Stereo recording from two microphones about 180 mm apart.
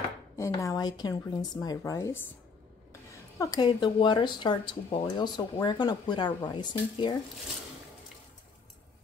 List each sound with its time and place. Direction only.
0.4 s a woman's voice: 15° left (ahead or behind)